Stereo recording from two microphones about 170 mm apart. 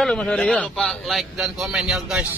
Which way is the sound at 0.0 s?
5° left (ahead or behind).